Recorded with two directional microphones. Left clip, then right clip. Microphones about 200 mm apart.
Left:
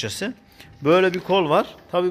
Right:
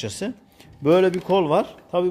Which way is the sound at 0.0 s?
5° right (ahead or behind).